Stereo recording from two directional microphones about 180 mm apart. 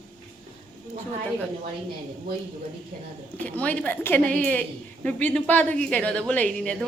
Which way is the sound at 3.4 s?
10° left (ahead or behind).